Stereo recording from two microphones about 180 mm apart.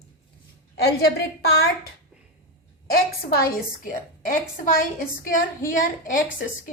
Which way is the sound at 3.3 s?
50° left (ahead or behind).